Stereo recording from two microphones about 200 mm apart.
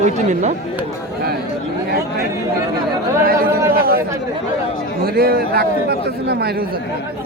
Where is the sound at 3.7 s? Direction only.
50° right (ahead or behind).